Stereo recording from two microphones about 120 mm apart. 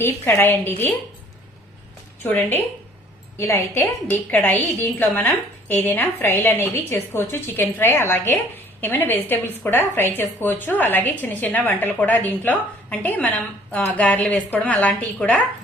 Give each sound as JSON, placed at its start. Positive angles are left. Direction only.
{"t": 0.0, "sound": "a woman's voice", "side_deg": 15}
{"t": 2.2, "sound": "a woman's voice", "side_deg": 15}